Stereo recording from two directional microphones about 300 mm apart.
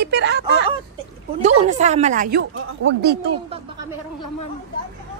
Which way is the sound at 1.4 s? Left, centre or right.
Right.